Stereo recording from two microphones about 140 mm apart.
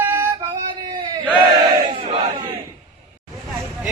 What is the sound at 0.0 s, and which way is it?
Female singing, 15° right (ahead or behind).